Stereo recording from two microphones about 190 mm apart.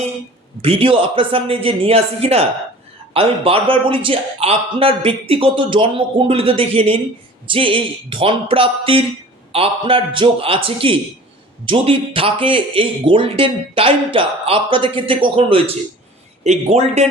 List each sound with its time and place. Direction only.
0.6 s speech: 30° right (ahead or behind)